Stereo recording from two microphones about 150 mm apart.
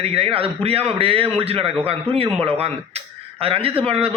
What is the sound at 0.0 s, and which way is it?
A man's voice, 40° right (ahead or behind).